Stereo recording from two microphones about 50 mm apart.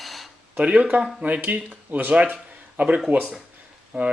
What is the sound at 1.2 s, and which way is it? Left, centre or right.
Speech, right.